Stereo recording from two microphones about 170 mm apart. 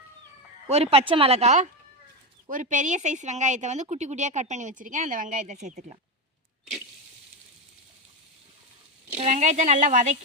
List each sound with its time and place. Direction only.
0.7 s a woman's voice: 35° right (ahead or behind)
9.1 s a woman's voice: 40° right (ahead or behind)